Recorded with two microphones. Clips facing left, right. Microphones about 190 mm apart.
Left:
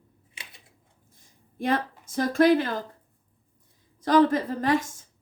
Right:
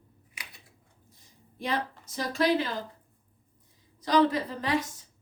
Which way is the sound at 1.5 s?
50° left (ahead or behind).